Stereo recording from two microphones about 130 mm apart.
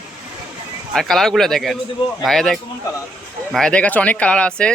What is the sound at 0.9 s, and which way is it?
Speech, centre (ahead or behind).